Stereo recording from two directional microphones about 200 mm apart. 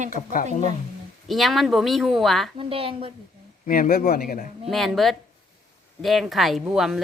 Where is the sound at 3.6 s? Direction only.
45° left (ahead or behind).